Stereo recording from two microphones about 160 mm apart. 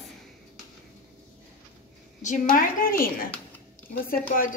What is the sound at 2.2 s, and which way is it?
A woman's voice, 55° left (ahead or behind).